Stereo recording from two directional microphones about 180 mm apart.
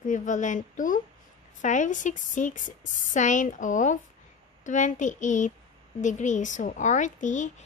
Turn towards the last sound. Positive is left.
turn(degrees=45)  # may be behind; listen again after turning